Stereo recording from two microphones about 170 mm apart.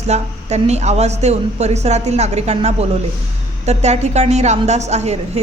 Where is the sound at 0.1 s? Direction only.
40° right (ahead or behind).